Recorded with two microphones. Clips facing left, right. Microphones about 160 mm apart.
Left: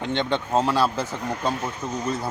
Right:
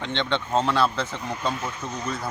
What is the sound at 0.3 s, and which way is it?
Speech, 5° left (ahead or behind).